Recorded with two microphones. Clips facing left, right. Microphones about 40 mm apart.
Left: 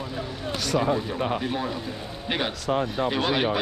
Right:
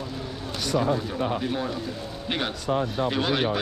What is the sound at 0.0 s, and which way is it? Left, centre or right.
Vehicle, left.